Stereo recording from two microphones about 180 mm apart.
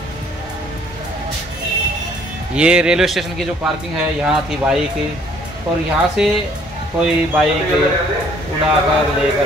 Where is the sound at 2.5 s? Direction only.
5° right (ahead or behind).